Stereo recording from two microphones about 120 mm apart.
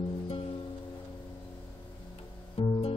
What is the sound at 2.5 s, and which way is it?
Music, 45° left (ahead or behind).